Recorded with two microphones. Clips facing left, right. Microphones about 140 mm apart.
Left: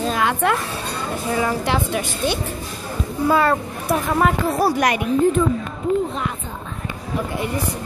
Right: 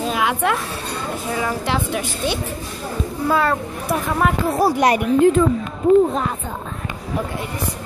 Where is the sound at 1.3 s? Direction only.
Centre (ahead or behind).